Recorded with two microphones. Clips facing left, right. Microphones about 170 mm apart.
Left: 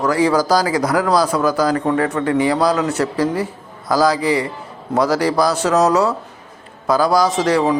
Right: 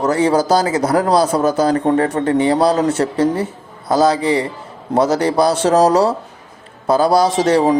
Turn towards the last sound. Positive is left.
turn(degrees=-30)  # may be behind; listen again after turning